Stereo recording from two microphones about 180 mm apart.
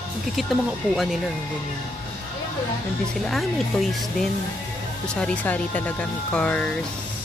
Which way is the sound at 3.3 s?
Centre (ahead or behind).